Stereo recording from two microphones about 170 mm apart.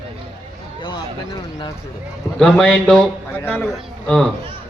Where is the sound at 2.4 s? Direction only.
5° left (ahead or behind).